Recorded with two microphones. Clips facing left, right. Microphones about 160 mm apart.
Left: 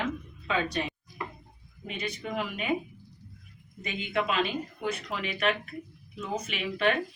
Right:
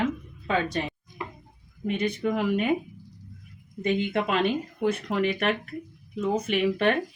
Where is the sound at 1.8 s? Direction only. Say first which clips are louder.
Right 9 dB; 55° right (ahead or behind).